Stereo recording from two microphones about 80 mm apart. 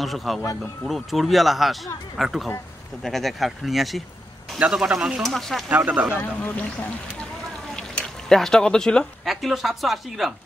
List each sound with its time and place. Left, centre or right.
0.0 s speech: centre
4.6 s a man's voice: centre
5.7 s speech: right
6.1 s speech: left
7.7 s a sound: centre
9.3 s speech: centre